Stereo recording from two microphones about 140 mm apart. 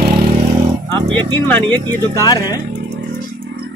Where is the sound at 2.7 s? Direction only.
90° right.